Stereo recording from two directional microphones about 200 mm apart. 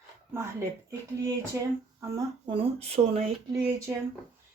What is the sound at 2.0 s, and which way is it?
Speech, 20° right (ahead or behind).